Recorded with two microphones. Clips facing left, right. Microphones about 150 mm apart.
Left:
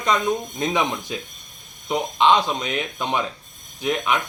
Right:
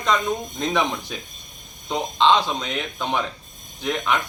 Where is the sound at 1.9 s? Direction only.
10° left (ahead or behind).